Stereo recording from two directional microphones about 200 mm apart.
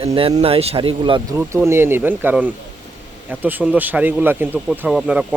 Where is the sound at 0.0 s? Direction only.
30° right (ahead or behind).